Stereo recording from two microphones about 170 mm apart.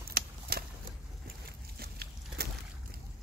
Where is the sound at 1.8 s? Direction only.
70° right (ahead or behind).